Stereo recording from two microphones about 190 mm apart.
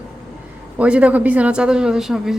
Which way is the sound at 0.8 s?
5° right (ahead or behind).